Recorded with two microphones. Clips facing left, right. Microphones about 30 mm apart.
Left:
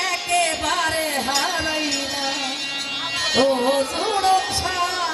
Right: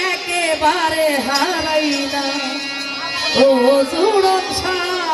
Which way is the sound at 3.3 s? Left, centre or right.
Right.